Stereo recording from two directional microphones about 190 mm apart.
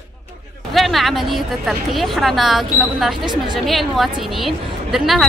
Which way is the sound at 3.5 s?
Centre (ahead or behind).